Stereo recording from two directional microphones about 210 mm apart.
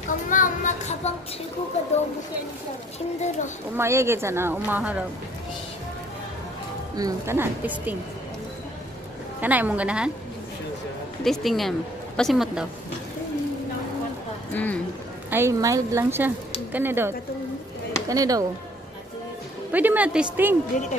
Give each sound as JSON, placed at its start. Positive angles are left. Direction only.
{"t": 0.3, "sound": "a sound", "side_deg": 35}
{"t": 3.2, "sound": "speech", "side_deg": 35}
{"t": 3.7, "sound": "speech", "side_deg": -15}
{"t": 7.0, "sound": "speech", "side_deg": -15}
{"t": 9.4, "sound": "speech", "side_deg": -10}
{"t": 11.2, "sound": "speech", "side_deg": 0}
{"t": 14.5, "sound": "a sound", "side_deg": 10}
{"t": 15.2, "sound": "speech", "side_deg": -10}
{"t": 19.7, "sound": "speech", "side_deg": -10}